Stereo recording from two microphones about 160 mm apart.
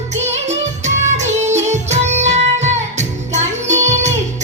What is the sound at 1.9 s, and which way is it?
Music, 45° right (ahead or behind).